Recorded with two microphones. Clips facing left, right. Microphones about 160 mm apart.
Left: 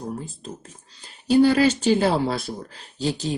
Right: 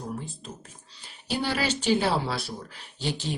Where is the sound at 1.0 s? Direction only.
45° left (ahead or behind).